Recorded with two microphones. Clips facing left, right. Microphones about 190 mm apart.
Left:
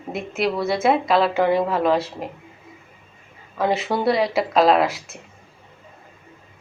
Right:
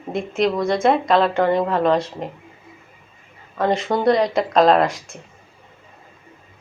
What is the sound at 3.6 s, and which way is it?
Speech, 5° left (ahead or behind).